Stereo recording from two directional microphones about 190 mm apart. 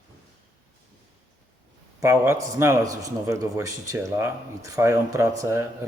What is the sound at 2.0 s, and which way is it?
A man's voice, 15° right (ahead or behind).